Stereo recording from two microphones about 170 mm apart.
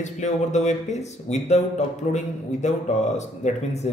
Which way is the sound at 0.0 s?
45° left (ahead or behind).